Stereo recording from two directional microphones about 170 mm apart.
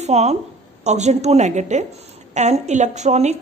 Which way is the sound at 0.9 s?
40° right (ahead or behind).